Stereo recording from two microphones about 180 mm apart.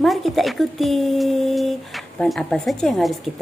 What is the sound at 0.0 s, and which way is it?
Speech, centre (ahead or behind).